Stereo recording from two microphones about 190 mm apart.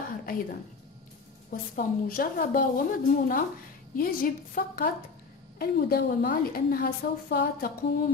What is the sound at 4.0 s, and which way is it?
A woman's voice, 50° left (ahead or behind).